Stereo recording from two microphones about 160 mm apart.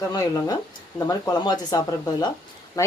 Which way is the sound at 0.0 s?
20° left (ahead or behind).